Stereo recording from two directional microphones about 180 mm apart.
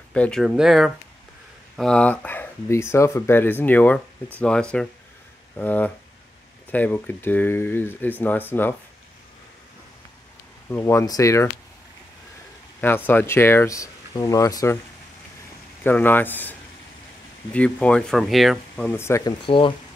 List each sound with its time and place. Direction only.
0.1 s speech: 5° left (ahead or behind)
10.7 s speech: 15° left (ahead or behind)
12.8 s speech: 10° left (ahead or behind)
15.8 s speech: 10° left (ahead or behind)
18.9 s speech: 15° left (ahead or behind)
19.4 s speech: 30° left (ahead or behind)